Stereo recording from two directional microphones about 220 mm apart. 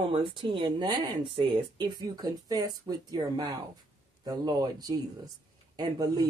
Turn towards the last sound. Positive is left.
turn(degrees=-15)  # may be behind; listen again after turning